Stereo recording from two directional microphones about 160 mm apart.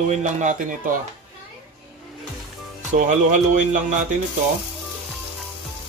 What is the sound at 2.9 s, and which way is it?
Speech, 50° right (ahead or behind).